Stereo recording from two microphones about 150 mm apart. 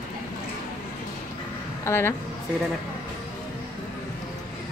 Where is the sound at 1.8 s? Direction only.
15° left (ahead or behind).